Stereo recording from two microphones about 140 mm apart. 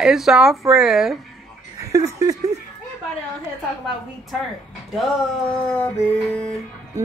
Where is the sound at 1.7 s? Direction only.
25° right (ahead or behind).